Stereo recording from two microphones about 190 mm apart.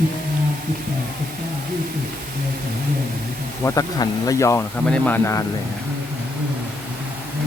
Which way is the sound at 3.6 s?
15° left (ahead or behind).